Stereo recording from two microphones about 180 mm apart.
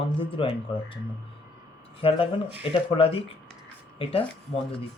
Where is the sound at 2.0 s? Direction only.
30° left (ahead or behind).